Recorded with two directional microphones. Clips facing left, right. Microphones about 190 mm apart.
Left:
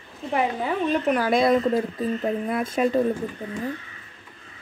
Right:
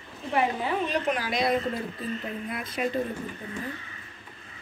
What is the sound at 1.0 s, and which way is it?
Speech, 50° left (ahead or behind).